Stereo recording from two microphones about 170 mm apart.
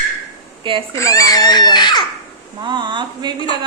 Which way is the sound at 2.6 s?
25° right (ahead or behind).